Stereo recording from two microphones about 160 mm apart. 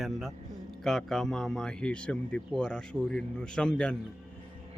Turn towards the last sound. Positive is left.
turn(degrees=5)  # may be behind; listen again after turning